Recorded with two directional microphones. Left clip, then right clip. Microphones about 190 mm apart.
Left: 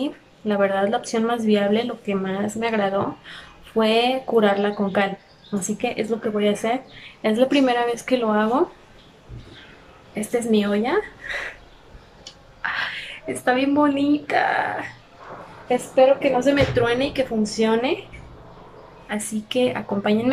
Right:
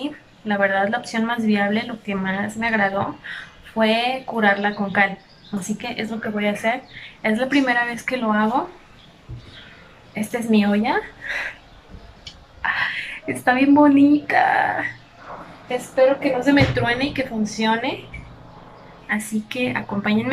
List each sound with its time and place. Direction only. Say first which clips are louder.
0.0 s speech: left 3 dB; 15° left (ahead or behind)
10.1 s a woman's voice: left 1 dB; centre (ahead or behind)
12.6 s speech: right 4 dB; centre (ahead or behind)
15.9 s speech: left 1 dB; 10° left (ahead or behind)
19.0 s speech: right 3 dB; 10° left (ahead or behind)